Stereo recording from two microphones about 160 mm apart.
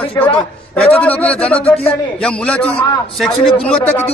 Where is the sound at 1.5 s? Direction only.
35° left (ahead or behind).